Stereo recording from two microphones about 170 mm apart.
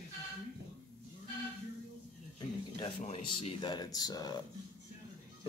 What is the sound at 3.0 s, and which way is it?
Speech, 35° left (ahead or behind).